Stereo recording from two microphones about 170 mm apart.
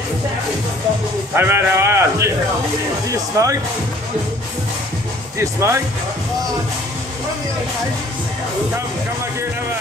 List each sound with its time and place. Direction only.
1.3 s speech: 15° right (ahead or behind)
5.4 s speech: 15° right (ahead or behind)